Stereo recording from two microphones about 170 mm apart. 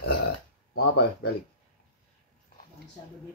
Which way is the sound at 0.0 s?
90° left.